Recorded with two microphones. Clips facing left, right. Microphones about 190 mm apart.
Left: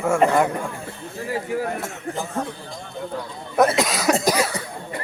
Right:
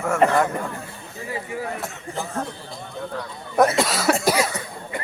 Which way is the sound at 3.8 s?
15° left (ahead or behind).